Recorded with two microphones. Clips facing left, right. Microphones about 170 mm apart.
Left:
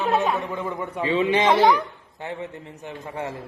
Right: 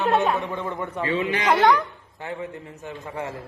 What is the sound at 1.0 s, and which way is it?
A man's voice, 20° left (ahead or behind).